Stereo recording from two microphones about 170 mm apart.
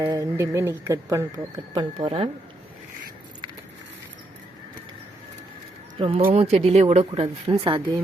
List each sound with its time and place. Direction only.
0.0 s speech: 20° right (ahead or behind); by 2.3 s 35° right (ahead or behind)
6.0 s speech: 35° right (ahead or behind)